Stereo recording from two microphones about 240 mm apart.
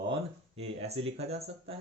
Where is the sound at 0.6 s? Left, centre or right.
Right.